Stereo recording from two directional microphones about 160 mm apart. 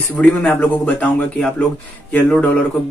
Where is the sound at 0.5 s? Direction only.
10° left (ahead or behind).